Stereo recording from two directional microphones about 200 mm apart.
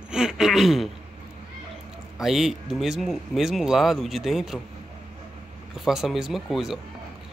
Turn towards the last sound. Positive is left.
turn(degrees=0)  # may be behind; listen again after turning